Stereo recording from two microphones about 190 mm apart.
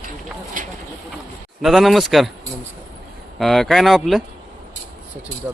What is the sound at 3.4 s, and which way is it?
Speech, centre (ahead or behind).